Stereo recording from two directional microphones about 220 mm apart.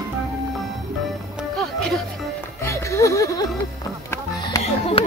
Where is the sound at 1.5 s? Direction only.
Centre (ahead or behind).